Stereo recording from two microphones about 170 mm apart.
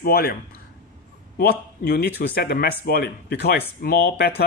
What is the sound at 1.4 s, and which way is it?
Speech, 65° left (ahead or behind).